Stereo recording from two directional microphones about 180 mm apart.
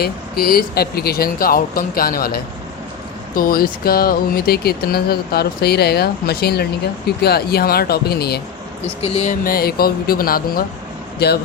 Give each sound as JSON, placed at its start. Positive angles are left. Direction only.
{"t": 0.0, "sound": "speech", "side_deg": 55}
{"t": 9.0, "sound": "speech", "side_deg": 35}
{"t": 9.3, "sound": "speech", "side_deg": 55}